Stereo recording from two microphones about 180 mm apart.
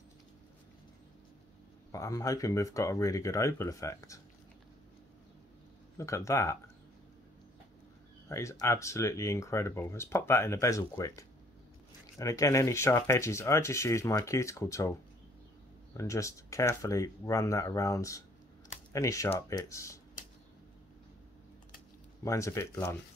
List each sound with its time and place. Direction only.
1.9 s speech: 15° left (ahead or behind)
5.9 s speech: 15° left (ahead or behind)
8.3 s speech: 15° left (ahead or behind)
22.2 s speech: 15° left (ahead or behind)